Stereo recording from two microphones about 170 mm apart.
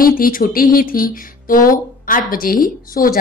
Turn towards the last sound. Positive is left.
turn(degrees=55)  # may be behind; listen again after turning